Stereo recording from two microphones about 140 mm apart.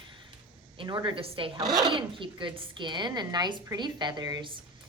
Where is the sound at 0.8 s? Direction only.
35° right (ahead or behind).